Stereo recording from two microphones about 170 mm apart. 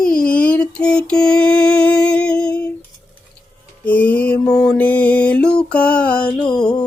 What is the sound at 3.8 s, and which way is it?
Music, 10° left (ahead or behind).